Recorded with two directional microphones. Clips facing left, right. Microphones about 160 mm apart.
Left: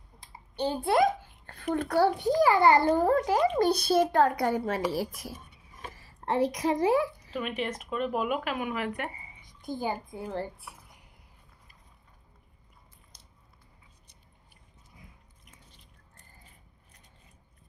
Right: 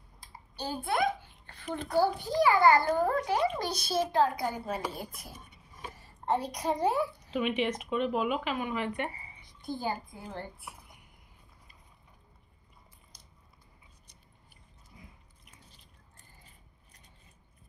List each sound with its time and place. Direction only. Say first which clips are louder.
0.8 s a child's voice: left 5 dB; 40° left (ahead or behind); by 2.1 s 65° left (ahead or behind)
2.4 s a child's voice: left 1 dB; 30° left (ahead or behind); by 7.3 s 90° left
7.3 s speech: right 3 dB; centre (ahead or behind)
9.7 s a child's voice: left 2 dB; 15° left (ahead or behind)